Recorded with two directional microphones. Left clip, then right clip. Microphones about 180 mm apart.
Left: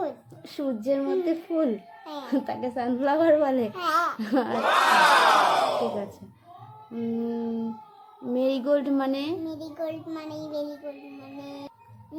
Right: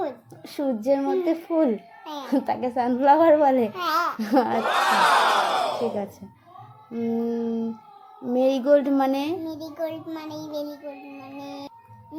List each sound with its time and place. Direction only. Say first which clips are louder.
0.4 s a child's voice: right 4 dB; 25° right (ahead or behind)
3.7 s child singing: right 1 dB; 5° left (ahead or behind)
4.2 s a child's voice: right 5 dB; 25° right (ahead or behind)
4.6 s crowd: left 1 dB; centre (ahead or behind)
6.9 s a child's voice: right 4 dB; 25° right (ahead or behind)
9.4 s child singing: right 2 dB; 5° left (ahead or behind)
11.2 s music: right 3 dB; centre (ahead or behind)